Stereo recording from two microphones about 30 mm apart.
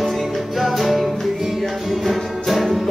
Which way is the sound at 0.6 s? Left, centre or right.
Centre.